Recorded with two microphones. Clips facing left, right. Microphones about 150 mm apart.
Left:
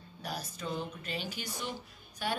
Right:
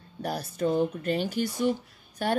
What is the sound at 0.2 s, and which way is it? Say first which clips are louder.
A woman's voice: right 11 dB; 50° right (ahead or behind).